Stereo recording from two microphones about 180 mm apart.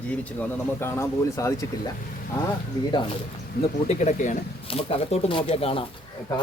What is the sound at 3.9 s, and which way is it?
Speech, 40° left (ahead or behind).